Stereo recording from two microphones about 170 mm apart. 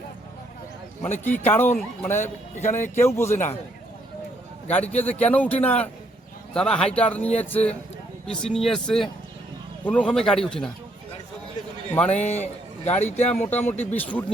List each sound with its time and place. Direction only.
1.0 s a man's voice: 10° left (ahead or behind)
4.9 s a man's voice: 10° left (ahead or behind)
11.9 s a man's voice: 10° left (ahead or behind)
12.1 s a man's voice: 40° left (ahead or behind)
13.3 s a man's voice: 10° left (ahead or behind)